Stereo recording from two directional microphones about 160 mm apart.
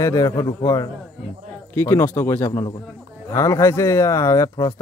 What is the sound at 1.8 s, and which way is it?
Speech, 15° left (ahead or behind).